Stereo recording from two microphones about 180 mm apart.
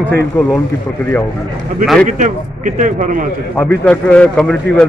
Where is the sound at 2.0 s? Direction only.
45° right (ahead or behind).